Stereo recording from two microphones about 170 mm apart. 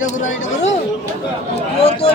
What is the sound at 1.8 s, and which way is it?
Speech, 35° left (ahead or behind).